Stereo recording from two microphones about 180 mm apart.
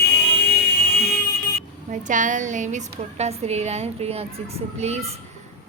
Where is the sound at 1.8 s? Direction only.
45° right (ahead or behind).